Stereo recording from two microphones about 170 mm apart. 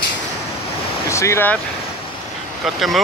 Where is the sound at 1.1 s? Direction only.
15° left (ahead or behind).